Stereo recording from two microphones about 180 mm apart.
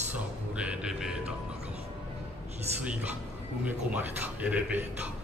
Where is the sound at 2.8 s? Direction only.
5° right (ahead or behind).